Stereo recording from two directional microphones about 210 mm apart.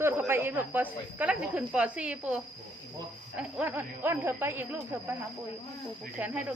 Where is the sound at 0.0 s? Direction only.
10° right (ahead or behind).